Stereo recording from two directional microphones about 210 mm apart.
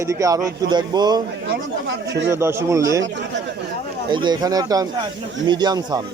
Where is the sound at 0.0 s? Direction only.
15° right (ahead or behind).